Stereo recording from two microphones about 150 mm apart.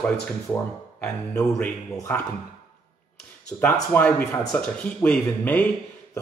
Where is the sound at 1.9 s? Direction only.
15° left (ahead or behind).